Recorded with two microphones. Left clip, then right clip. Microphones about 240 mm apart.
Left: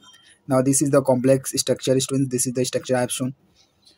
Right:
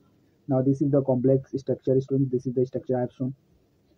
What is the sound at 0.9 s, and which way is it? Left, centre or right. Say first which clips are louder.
Speech: left 6 dB; left.